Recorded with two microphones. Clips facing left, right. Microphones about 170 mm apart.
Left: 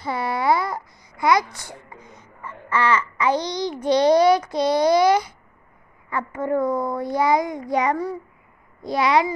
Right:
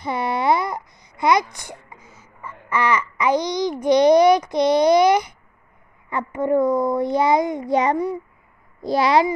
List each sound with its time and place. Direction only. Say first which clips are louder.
0.0 s babbling: right 1 dB; 20° right (ahead or behind)
3.8 s a child's voice: right 2 dB; 15° right (ahead or behind)
8.8 s a child's voice: right 2 dB; 35° right (ahead or behind)